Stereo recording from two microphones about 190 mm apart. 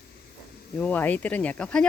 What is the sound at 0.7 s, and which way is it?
Speech, 10° left (ahead or behind).